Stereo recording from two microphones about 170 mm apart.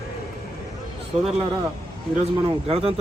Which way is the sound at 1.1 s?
35° right (ahead or behind).